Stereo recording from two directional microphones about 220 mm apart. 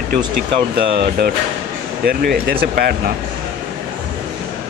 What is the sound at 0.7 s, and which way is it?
Speech, 45° right (ahead or behind).